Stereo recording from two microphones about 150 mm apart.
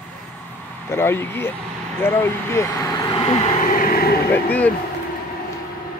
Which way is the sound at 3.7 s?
80° left.